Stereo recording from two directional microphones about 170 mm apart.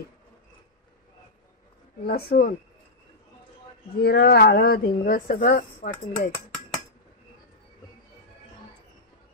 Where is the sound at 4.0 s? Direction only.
70° left (ahead or behind).